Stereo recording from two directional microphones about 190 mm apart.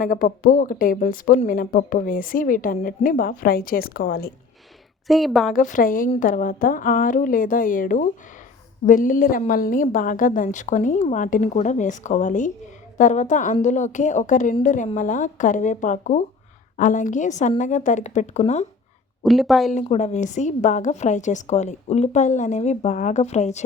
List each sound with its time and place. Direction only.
0.0 s speech: 50° left (ahead or behind)
5.0 s a woman's voice: centre (ahead or behind)
5.5 s a woman's voice: 45° left (ahead or behind)
19.2 s a woman's voice: centre (ahead or behind)
19.7 s a woman's voice: 35° left (ahead or behind)